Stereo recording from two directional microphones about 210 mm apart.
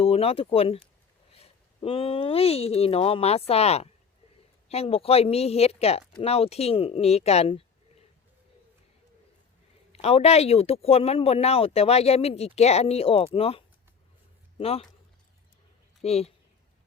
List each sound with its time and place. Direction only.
0.0 s speech: 25° left (ahead or behind)
9.9 s speech: 30° left (ahead or behind)
16.0 s speech: 30° left (ahead or behind)